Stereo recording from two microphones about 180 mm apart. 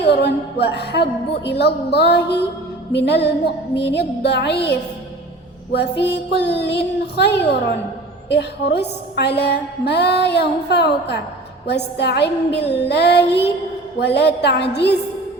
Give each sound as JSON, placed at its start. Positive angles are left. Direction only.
{"t": 0.0, "sound": "a woman's voice", "side_deg": 70}